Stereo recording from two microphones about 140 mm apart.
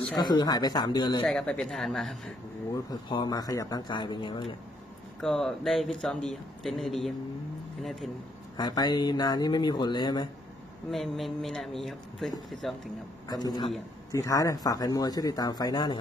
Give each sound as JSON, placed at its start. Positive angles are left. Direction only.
{"t": 0.2, "sound": "speech", "side_deg": 30}
{"t": 1.2, "sound": "speech", "side_deg": 5}
{"t": 2.7, "sound": "speech", "side_deg": 30}
{"t": 5.2, "sound": "speech", "side_deg": 0}
{"t": 8.5, "sound": "speech", "side_deg": 30}
{"t": 10.9, "sound": "speech", "side_deg": 0}
{"t": 13.3, "sound": "speech", "side_deg": 30}